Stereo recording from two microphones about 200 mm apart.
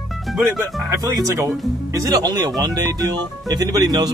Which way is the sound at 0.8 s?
15° right (ahead or behind).